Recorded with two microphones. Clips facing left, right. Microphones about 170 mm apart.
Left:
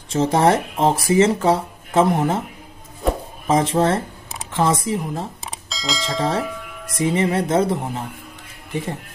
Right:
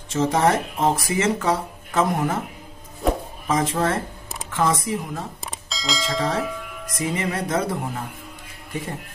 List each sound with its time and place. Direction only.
0.1 s speech: 30° left (ahead or behind)
3.0 s a sound: centre (ahead or behind)
3.4 s speech: 30° left (ahead or behind)
5.4 s bell: centre (ahead or behind)
7.0 s speech: 30° left (ahead or behind)